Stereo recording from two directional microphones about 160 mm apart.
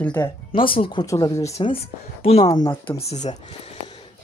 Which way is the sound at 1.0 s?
20° left (ahead or behind).